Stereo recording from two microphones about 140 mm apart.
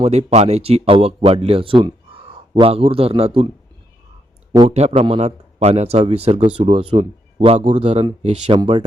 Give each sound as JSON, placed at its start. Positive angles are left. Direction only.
{"t": 0.0, "sound": "a man's voice", "side_deg": -50}
{"t": 4.7, "sound": "a man's voice", "side_deg": -45}
{"t": 7.8, "sound": "a man's voice", "side_deg": -40}